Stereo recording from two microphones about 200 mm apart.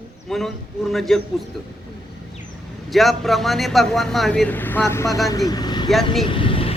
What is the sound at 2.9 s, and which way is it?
A man's voice, centre (ahead or behind).